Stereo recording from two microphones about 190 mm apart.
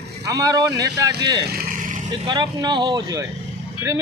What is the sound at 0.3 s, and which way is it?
Speech, 20° right (ahead or behind).